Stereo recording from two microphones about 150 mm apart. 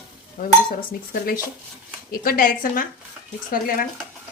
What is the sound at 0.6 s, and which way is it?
A woman's voice, 75° left (ahead or behind).